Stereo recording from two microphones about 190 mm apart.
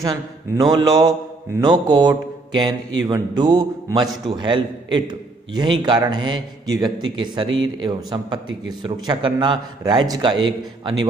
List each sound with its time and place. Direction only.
0.0 s a man's voice: 20° right (ahead or behind)